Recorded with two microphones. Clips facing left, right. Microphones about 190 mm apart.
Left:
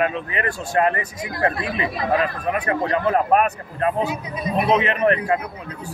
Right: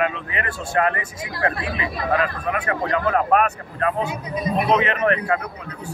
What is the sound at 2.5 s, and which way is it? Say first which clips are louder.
Speech: left 3 dB; 30° left (ahead or behind).